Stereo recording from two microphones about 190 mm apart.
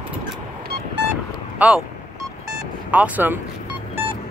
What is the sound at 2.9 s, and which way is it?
Speech, 10° right (ahead or behind).